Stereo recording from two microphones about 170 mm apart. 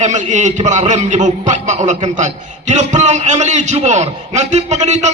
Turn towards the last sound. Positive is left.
turn(degrees=-40)  # may be behind; listen again after turning